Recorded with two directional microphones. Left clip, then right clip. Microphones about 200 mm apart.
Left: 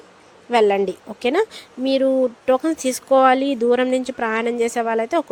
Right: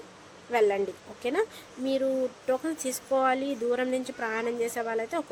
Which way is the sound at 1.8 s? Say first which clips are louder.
Left 10 dB; 40° left (ahead or behind).